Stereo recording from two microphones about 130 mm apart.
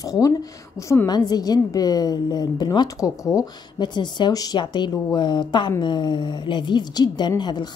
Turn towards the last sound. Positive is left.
turn(degrees=35)  # may be behind; listen again after turning